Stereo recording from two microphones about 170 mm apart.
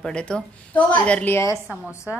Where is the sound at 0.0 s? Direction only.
5° left (ahead or behind).